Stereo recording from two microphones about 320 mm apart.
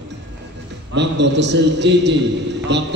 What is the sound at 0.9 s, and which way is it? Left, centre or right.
A man's voice, right.